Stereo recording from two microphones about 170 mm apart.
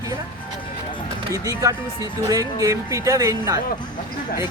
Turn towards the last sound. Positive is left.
turn(degrees=-20)  # may be behind; listen again after turning